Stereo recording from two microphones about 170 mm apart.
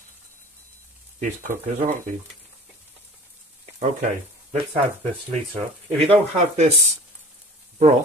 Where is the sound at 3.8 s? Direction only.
45° right (ahead or behind).